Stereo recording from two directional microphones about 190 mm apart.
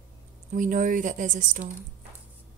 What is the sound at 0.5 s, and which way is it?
Speech, 45° right (ahead or behind).